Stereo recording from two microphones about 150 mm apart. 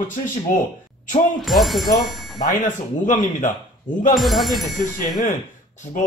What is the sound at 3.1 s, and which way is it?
Speech, 60° left (ahead or behind).